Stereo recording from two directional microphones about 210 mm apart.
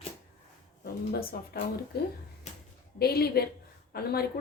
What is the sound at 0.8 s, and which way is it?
Speech, 45° left (ahead or behind).